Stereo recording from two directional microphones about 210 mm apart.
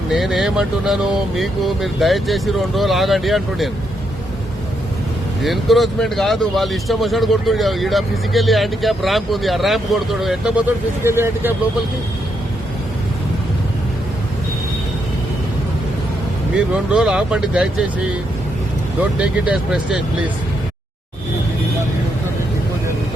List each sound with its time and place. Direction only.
0.1 s speech: centre (ahead or behind)
5.4 s speech: centre (ahead or behind)
11.0 s speech: 10° right (ahead or behind)
16.6 s speech: 5° right (ahead or behind)
19.2 s speech: 5° right (ahead or behind)